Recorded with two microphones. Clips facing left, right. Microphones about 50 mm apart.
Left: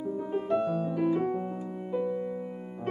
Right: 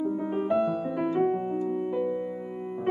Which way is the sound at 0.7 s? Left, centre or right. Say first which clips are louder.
Right 1 dB; centre.